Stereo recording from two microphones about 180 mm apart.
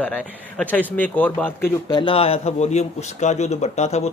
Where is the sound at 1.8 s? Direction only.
25° left (ahead or behind).